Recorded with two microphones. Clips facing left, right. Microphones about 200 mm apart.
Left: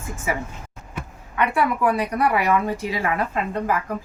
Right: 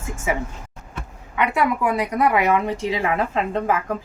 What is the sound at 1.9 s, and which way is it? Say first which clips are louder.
Speech: right 1 dB; 20° right (ahead or behind).